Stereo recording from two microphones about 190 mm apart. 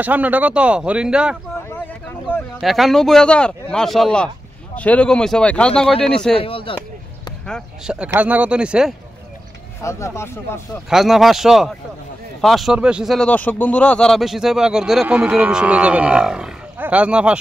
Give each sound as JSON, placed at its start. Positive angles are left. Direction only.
{"t": 0.0, "sound": "speech", "side_deg": -10}
{"t": 2.6, "sound": "speech", "side_deg": 0}
{"t": 6.3, "sound": "speech", "side_deg": 30}
{"t": 7.4, "sound": "speech", "side_deg": 0}
{"t": 9.8, "sound": "speech", "side_deg": 15}
{"t": 10.7, "sound": "speech", "side_deg": 0}